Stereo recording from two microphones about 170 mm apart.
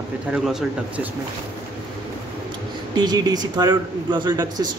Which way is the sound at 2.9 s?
25° right (ahead or behind).